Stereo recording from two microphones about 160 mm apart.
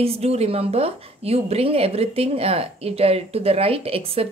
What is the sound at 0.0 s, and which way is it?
A woman's voice, 40° right (ahead or behind).